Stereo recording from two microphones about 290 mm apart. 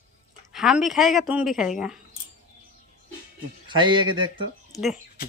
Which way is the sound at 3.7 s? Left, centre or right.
Centre.